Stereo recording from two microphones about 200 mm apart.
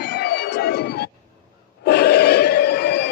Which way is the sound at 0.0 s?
55° left (ahead or behind).